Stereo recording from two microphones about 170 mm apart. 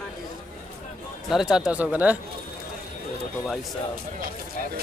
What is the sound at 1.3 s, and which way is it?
Speech, 5° right (ahead or behind).